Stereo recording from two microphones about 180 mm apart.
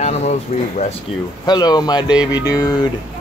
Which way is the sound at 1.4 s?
20° left (ahead or behind).